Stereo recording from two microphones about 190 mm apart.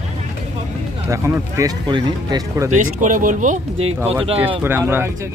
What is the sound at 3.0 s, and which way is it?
Speech, 45° right (ahead or behind).